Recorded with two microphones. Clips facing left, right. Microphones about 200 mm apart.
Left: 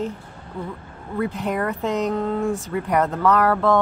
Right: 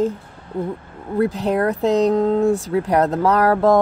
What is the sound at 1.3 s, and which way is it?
Speech, 35° right (ahead or behind).